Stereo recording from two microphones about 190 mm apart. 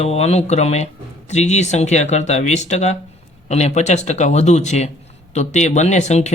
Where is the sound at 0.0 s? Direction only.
35° left (ahead or behind).